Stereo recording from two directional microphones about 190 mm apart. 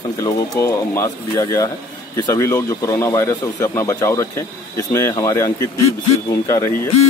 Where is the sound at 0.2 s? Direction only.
15° left (ahead or behind).